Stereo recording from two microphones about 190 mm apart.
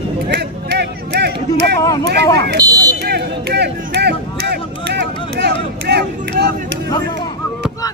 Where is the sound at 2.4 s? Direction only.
60° right (ahead or behind).